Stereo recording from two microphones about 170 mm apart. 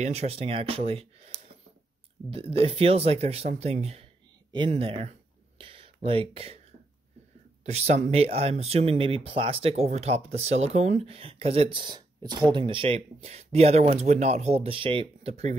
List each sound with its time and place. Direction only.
0.0 s speech: 40° right (ahead or behind)
7.6 s speech: 40° right (ahead or behind)